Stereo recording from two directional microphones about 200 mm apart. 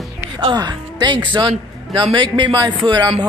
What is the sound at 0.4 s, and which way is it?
A man's voice, 20° right (ahead or behind).